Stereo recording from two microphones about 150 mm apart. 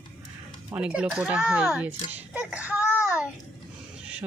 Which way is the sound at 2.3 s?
10° right (ahead or behind).